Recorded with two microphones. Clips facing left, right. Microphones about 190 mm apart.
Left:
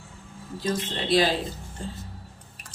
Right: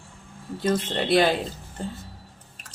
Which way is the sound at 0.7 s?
60° right (ahead or behind).